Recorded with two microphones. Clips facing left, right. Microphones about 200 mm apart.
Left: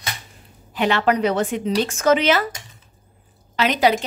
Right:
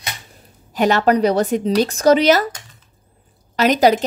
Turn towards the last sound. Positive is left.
turn(degrees=-40)  # may be behind; listen again after turning